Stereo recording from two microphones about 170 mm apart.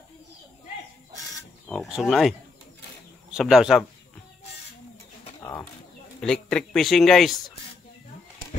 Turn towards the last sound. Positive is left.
turn(degrees=0)  # may be behind; listen again after turning